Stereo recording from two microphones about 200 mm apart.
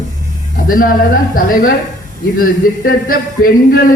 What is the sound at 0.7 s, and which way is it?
Speech, 45° left (ahead or behind).